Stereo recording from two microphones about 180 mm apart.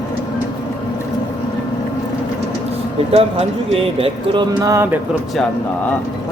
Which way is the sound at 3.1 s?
35° right (ahead or behind).